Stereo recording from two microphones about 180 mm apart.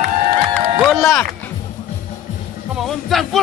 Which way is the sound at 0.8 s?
Centre (ahead or behind).